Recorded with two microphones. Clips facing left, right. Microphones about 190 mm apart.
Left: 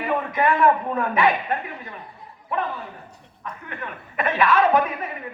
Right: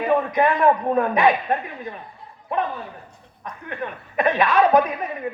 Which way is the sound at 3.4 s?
15° right (ahead or behind).